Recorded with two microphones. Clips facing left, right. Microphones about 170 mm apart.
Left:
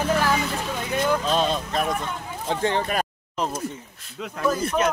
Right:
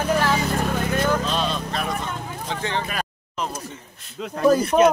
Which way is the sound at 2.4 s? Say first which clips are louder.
Left 4 dB; 45° left (ahead or behind).